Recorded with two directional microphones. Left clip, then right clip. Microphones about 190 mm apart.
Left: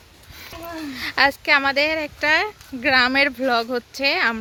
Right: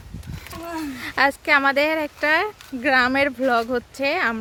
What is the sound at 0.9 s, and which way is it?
Speech, centre (ahead or behind).